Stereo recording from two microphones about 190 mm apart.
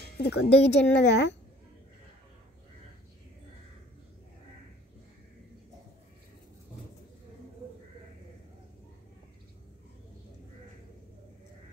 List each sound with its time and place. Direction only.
0.2 s a woman's voice: 60° left (ahead or behind)